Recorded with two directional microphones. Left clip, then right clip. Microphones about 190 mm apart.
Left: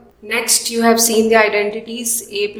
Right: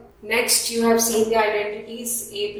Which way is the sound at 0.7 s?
45° left (ahead or behind).